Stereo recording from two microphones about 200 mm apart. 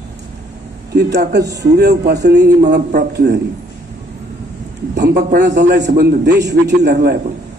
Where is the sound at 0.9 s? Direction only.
55° right (ahead or behind).